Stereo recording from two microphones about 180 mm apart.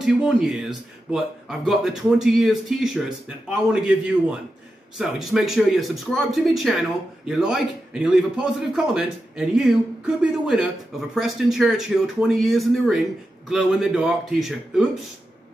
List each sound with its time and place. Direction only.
0.0 s speech: centre (ahead or behind)